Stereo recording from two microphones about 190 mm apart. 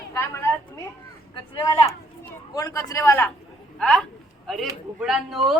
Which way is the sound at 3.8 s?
5° left (ahead or behind).